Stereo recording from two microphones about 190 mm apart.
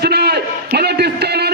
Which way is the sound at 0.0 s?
60° right (ahead or behind).